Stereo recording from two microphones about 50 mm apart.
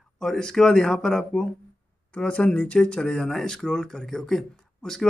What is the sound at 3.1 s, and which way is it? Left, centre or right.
A man's voice, centre.